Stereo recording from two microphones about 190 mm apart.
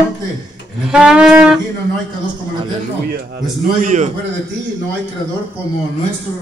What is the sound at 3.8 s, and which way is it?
Speech, 40° right (ahead or behind).